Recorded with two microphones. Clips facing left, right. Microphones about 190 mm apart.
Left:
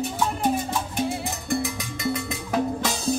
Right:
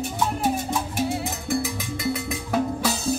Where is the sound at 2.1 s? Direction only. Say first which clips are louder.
Right 1 dB; 5° right (ahead or behind).